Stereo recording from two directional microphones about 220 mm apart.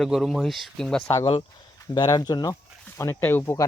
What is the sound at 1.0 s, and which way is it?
Speech, 20° left (ahead or behind).